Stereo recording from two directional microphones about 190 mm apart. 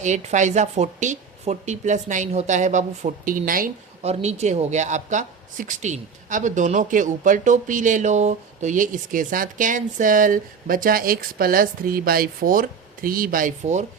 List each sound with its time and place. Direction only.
0.0 s speech: 40° right (ahead or behind)
4.0 s speech: 35° right (ahead or behind)